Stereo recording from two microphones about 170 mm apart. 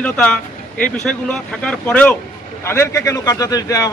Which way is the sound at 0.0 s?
5° left (ahead or behind).